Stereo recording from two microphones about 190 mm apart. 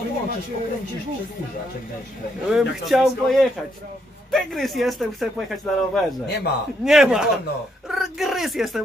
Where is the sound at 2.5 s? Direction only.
Centre (ahead or behind).